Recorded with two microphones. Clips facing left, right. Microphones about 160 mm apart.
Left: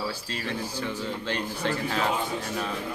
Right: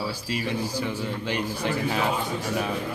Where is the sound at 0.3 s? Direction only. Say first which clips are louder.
Right 4 dB; 10° right (ahead or behind).